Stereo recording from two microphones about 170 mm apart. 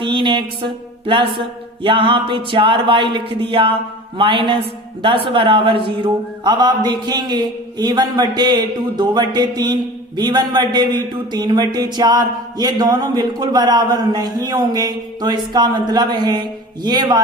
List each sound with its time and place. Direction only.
0.0 s a man's voice: 30° right (ahead or behind)